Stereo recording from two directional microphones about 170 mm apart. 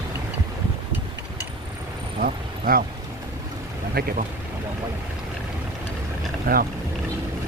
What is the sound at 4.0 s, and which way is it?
Speech, 65° right (ahead or behind).